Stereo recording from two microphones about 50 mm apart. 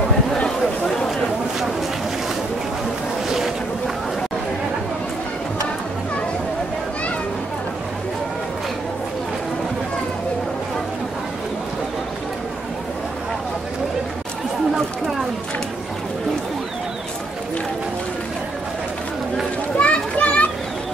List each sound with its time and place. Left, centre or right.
3.3 s boat: centre
19.8 s children playing: left